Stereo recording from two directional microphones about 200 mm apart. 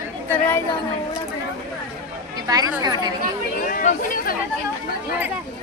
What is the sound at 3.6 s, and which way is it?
Speech, 45° left (ahead or behind).